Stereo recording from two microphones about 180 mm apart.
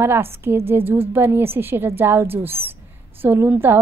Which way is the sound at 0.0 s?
15° right (ahead or behind).